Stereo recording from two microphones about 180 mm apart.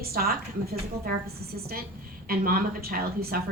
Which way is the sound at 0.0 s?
55° right (ahead or behind).